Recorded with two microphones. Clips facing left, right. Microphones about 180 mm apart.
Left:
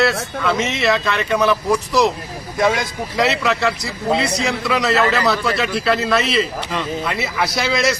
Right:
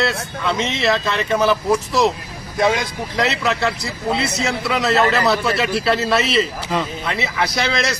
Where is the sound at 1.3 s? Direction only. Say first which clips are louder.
Even; 30° right (ahead or behind).